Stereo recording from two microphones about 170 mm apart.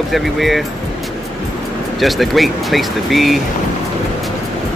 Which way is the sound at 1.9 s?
Centre (ahead or behind).